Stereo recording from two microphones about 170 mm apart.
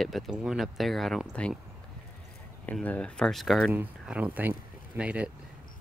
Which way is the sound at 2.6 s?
10° left (ahead or behind).